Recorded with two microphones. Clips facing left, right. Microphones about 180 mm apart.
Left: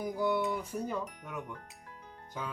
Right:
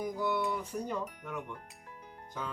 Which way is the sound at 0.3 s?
5° left (ahead or behind).